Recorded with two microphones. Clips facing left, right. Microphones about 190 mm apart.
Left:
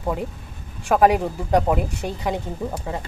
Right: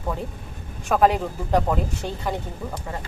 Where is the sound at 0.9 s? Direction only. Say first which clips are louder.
Left 2 dB; 10° left (ahead or behind).